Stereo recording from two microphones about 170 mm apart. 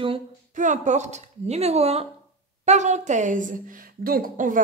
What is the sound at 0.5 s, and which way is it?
A woman's voice, 45° right (ahead or behind).